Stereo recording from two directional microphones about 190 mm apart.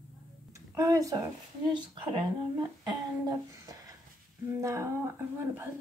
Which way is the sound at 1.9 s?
25° right (ahead or behind).